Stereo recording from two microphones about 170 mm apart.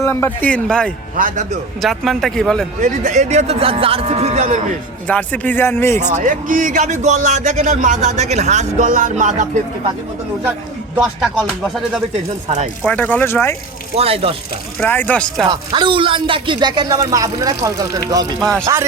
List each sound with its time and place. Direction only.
0.0 s speech: 15° left (ahead or behind)
1.2 s a man's voice: 50° right (ahead or behind)
1.8 s speech: centre (ahead or behind)
2.8 s speech: 50° right (ahead or behind)
5.0 s speech: 10° left (ahead or behind)
6.0 s a man's voice: 45° right (ahead or behind)
10.9 s speech: 5° right (ahead or behind); by 13.6 s 15° left (ahead or behind)
13.9 s speech: 35° right (ahead or behind)
14.8 s speech: 10° left (ahead or behind)
15.4 s speech: 25° right (ahead or behind)